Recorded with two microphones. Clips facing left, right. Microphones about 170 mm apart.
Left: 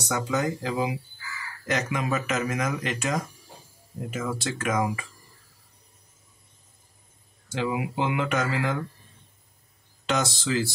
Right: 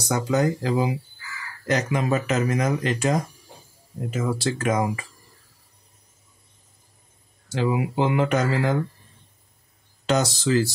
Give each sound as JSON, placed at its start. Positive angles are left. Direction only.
{"t": 0.0, "sound": "speech", "side_deg": -35}
{"t": 7.5, "sound": "speech", "side_deg": -35}
{"t": 10.0, "sound": "speech", "side_deg": -40}